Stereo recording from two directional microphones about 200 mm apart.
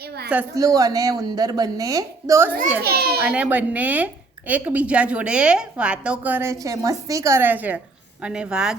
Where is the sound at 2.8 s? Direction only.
50° right (ahead or behind).